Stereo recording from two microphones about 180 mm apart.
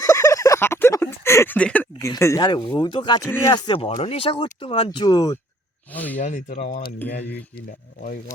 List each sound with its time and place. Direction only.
0.0 s a sound: 15° left (ahead or behind)
3.2 s speech: 10° left (ahead or behind)
3.5 s speech: 25° left (ahead or behind)
5.9 s speech: 10° left (ahead or behind)
6.1 s speech: 45° left (ahead or behind)